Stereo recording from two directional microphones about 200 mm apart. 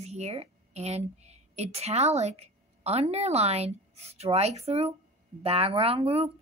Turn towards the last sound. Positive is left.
turn(degrees=-30)  # may be behind; listen again after turning